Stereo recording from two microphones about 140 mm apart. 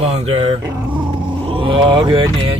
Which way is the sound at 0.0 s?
45° right (ahead or behind).